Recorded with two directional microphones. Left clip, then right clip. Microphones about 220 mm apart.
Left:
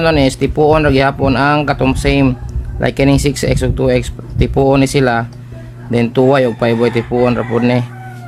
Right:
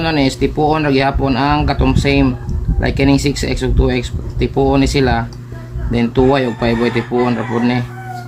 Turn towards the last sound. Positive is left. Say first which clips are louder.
# left 3 dB
turn(degrees=45)  # may be behind; listen again after turning